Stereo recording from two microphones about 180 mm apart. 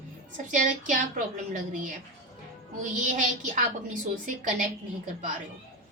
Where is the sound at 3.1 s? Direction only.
45° right (ahead or behind).